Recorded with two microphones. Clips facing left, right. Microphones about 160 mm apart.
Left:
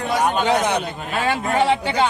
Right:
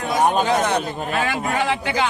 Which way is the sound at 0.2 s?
35° right (ahead or behind).